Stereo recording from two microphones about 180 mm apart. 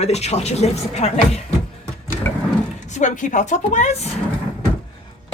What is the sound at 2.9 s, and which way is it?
A woman's voice, 45° left (ahead or behind).